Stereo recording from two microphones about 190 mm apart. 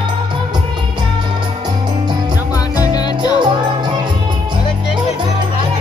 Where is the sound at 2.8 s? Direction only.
20° left (ahead or behind).